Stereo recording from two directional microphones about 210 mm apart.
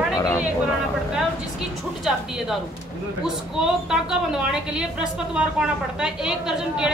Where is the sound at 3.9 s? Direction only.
5° right (ahead or behind).